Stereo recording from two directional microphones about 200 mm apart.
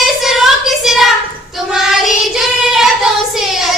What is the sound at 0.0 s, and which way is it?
Child singing, centre (ahead or behind).